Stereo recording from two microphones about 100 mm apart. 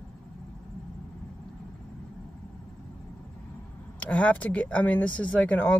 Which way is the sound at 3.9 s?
15° left (ahead or behind).